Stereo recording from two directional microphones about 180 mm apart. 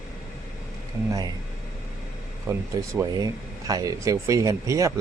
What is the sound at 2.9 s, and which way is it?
Speech, 15° right (ahead or behind).